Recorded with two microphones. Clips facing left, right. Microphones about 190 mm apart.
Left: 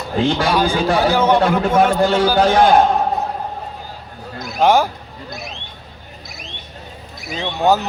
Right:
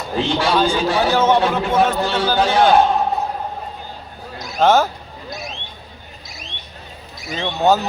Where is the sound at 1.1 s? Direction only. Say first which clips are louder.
Left 1 dB; 15° left (ahead or behind).